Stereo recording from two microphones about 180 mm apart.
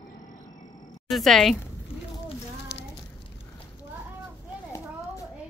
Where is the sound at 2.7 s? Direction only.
70° left (ahead or behind).